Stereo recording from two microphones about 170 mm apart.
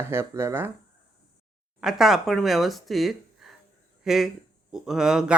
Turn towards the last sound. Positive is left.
turn(degrees=-5)  # may be behind; listen again after turning